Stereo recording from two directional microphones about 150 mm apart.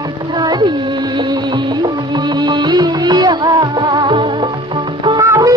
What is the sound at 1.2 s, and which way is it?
Music, 30° right (ahead or behind).